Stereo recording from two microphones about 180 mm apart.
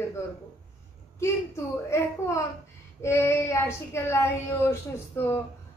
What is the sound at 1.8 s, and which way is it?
A woman's voice, 15° left (ahead or behind).